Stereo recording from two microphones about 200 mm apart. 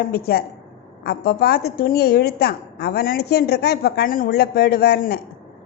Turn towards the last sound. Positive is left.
turn(degrees=55)  # may be behind; listen again after turning